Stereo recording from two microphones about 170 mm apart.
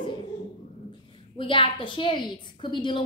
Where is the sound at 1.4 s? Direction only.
30° left (ahead or behind).